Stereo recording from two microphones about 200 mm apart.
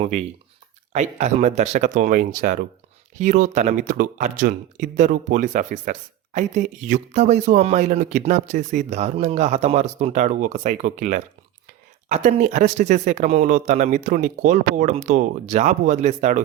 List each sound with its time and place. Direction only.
0.9 s speech: 35° right (ahead or behind)